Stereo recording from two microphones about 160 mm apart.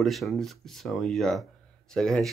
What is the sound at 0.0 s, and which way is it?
Speech, centre (ahead or behind).